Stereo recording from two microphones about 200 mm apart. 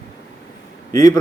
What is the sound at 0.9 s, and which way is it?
Speech, 15° left (ahead or behind).